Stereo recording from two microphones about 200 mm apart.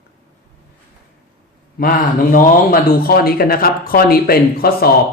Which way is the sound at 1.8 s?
45° left (ahead or behind).